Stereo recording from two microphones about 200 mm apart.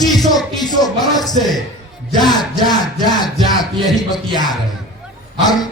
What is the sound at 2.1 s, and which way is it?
Speech, 20° left (ahead or behind).